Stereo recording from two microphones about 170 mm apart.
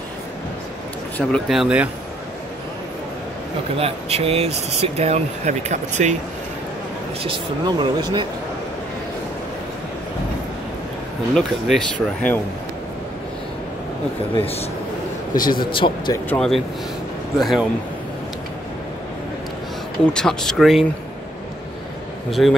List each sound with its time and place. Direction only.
1.1 s speech: centre (ahead or behind)
3.7 s speech: 35° right (ahead or behind)
7.2 s speech: 25° right (ahead or behind)
11.3 s speech: centre (ahead or behind)
14.4 s speech: 35° left (ahead or behind)
15.3 s a man's voice: 55° left (ahead or behind)
15.6 s speech: 30° left (ahead or behind)
16.3 s speech: 5° left (ahead or behind)
20.1 s speech: 5° left (ahead or behind)
22.3 s speech: centre (ahead or behind)